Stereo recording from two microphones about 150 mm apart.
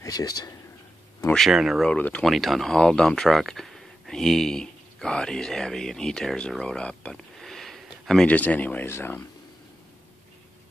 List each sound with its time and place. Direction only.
0.0 s speech: 25° left (ahead or behind)
1.3 s speech: centre (ahead or behind); by 9.2 s 15° left (ahead or behind)